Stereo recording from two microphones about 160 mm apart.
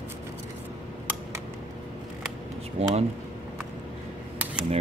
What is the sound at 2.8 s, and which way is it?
Speech, 40° right (ahead or behind).